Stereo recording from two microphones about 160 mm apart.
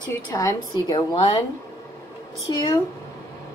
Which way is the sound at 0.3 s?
20° left (ahead or behind).